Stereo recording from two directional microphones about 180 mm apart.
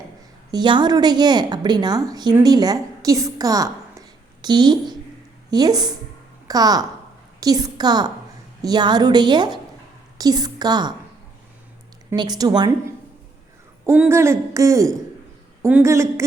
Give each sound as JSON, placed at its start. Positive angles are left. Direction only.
{"t": 0.5, "sound": "a woman's voice", "side_deg": -25}
{"t": 12.1, "sound": "a woman's voice", "side_deg": -25}